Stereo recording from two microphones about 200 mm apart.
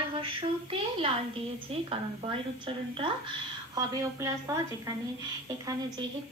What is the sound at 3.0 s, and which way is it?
A woman's voice, 20° right (ahead or behind).